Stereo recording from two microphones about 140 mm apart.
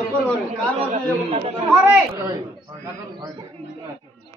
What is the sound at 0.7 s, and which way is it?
Speech, 45° right (ahead or behind).